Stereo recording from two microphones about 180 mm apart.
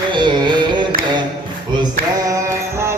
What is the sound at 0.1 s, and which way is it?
Music, 25° right (ahead or behind).